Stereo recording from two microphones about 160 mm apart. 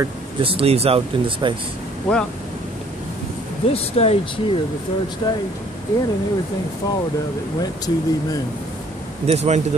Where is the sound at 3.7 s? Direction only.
40° left (ahead or behind).